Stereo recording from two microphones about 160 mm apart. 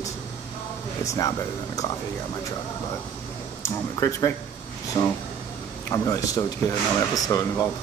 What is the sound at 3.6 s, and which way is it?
Speech, 20° left (ahead or behind).